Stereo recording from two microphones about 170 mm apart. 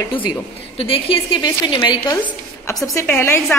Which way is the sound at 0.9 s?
30° left (ahead or behind).